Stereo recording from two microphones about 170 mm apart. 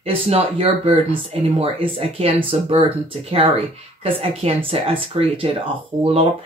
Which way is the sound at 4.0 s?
35° right (ahead or behind).